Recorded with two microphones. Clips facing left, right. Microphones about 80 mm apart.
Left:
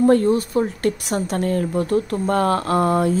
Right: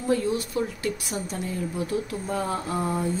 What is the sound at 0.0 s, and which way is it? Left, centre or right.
Speech, left.